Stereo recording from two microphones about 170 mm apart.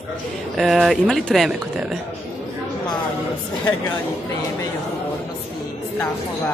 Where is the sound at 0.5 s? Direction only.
Centre (ahead or behind).